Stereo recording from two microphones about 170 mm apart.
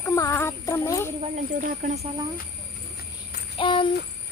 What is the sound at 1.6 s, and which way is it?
Speech, 45° right (ahead or behind).